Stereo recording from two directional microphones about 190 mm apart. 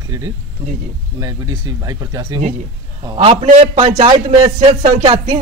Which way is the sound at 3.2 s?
30° right (ahead or behind).